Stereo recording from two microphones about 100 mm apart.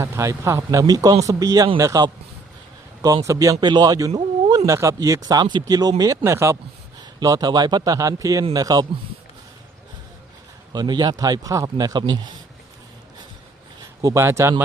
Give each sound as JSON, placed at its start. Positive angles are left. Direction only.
{"t": 0.0, "sound": "a man's voice", "side_deg": -30}
{"t": 3.2, "sound": "a man's voice", "side_deg": -35}
{"t": 7.0, "sound": "a man's voice", "side_deg": -40}
{"t": 10.7, "sound": "a man's voice", "side_deg": -45}
{"t": 14.0, "sound": "speech", "side_deg": -30}